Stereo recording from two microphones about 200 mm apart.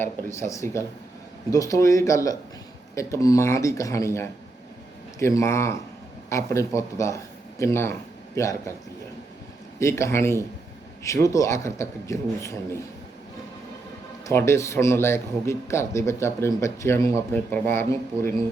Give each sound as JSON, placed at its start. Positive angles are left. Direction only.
{"t": 0.3, "sound": "speech", "side_deg": 15}
{"t": 9.8, "sound": "speech", "side_deg": 15}
{"t": 14.3, "sound": "speech", "side_deg": 15}